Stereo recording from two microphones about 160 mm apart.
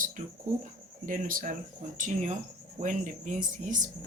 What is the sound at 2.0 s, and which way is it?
Speech, 50° right (ahead or behind).